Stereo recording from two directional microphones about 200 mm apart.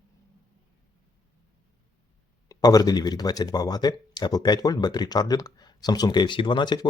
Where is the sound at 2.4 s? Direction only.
20° left (ahead or behind).